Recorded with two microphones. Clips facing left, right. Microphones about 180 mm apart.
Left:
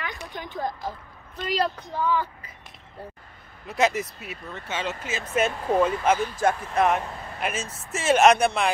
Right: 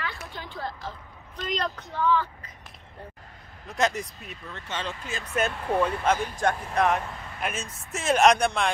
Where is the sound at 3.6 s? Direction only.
5° left (ahead or behind).